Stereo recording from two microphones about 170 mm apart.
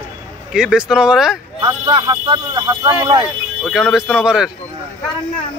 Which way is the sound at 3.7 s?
5° right (ahead or behind).